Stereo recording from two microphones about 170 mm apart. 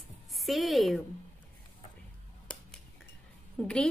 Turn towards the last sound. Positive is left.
turn(degrees=5)  # may be behind; listen again after turning